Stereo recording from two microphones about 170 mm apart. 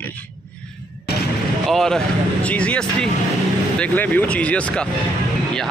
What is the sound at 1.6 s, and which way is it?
A man's voice, centre (ahead or behind).